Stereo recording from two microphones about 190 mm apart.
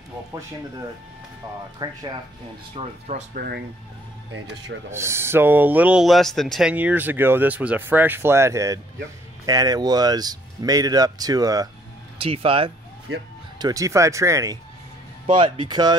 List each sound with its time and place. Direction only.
1.8 s speech: 20° right (ahead or behind)
2.7 s speech: 35° right (ahead or behind)
3.3 s speech: 55° right (ahead or behind)
4.9 s speech: 15° right (ahead or behind)
15.2 s speech: 25° right (ahead or behind)